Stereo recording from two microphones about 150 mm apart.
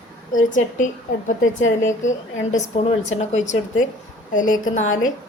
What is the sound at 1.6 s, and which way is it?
A woman's voice, 55° left (ahead or behind).